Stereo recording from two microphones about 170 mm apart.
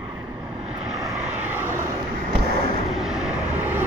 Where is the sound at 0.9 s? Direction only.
Centre (ahead or behind).